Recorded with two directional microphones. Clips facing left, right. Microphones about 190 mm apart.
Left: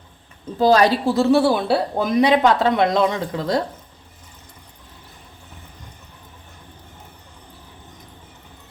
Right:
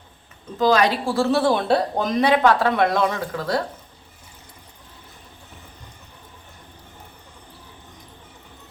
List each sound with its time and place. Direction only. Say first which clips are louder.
0.6 s a woman's voice: left 3 dB; 35° left (ahead or behind)
1.0 s speech: left 3 dB; 20° left (ahead or behind)